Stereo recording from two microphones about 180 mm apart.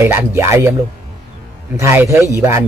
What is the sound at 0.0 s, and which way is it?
Speech, 15° right (ahead or behind).